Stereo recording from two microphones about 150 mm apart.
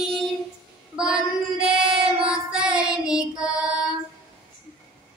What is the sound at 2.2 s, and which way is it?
Child singing, 5° right (ahead or behind).